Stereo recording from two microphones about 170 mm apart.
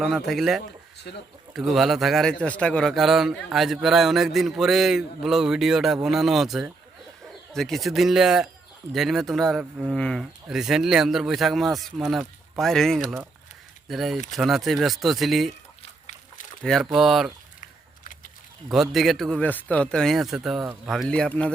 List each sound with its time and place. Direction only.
0.0 s a man's voice: centre (ahead or behind)
1.1 s speech: 70° left (ahead or behind)
1.5 s a man's voice: centre (ahead or behind)
16.6 s a man's voice: centre (ahead or behind)
17.6 s a sound: 50° left (ahead or behind)
18.7 s a man's voice: centre (ahead or behind)